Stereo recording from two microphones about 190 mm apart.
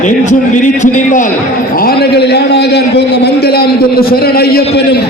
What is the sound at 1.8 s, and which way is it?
A man's voice, 55° left (ahead or behind).